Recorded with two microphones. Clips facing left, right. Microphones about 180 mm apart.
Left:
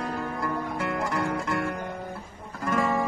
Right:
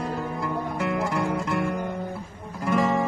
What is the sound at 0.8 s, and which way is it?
Music, centre (ahead or behind).